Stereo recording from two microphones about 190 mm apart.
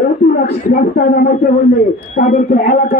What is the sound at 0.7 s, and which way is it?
A man's voice, 50° left (ahead or behind).